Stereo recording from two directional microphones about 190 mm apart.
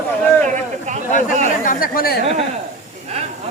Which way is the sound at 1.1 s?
40° left (ahead or behind).